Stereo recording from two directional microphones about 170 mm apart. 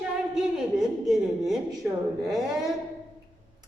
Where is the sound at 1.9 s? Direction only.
15° right (ahead or behind).